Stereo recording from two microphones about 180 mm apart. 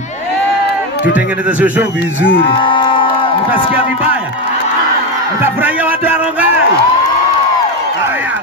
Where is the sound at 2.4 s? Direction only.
30° left (ahead or behind).